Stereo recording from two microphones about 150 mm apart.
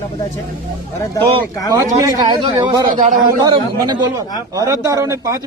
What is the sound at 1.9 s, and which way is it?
Speech, 25° right (ahead or behind).